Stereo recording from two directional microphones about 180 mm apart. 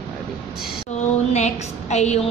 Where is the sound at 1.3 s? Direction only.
40° left (ahead or behind).